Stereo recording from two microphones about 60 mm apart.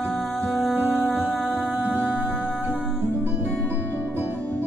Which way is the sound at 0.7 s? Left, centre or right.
Right.